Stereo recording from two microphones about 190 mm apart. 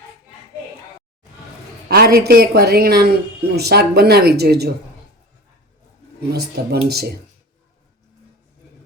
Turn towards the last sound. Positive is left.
turn(degrees=-55)  # may be behind; listen again after turning